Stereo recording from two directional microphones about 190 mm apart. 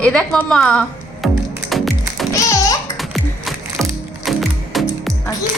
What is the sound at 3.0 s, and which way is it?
Music, centre (ahead or behind).